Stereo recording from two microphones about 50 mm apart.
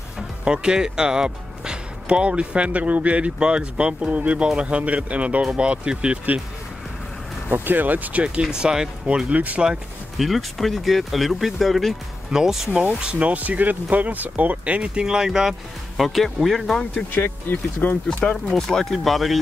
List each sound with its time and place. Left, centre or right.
0.5 s speech: centre
7.5 s speech: right
8.4 s speech: centre
9.3 s speech: right
10.1 s speech: centre
13.0 s speech: right
14.8 s speech: centre
16.0 s speech: centre
16.9 s speech: left
18.0 s speech: centre